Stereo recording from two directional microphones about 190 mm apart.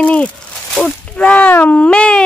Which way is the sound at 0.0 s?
5° left (ahead or behind).